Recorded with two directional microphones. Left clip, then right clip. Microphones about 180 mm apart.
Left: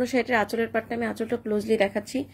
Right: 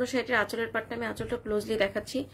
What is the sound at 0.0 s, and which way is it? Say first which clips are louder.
A woman's voice: left 4 dB; 25° left (ahead or behind).